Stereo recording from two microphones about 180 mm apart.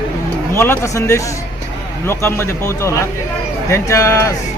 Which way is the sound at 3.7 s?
15° left (ahead or behind).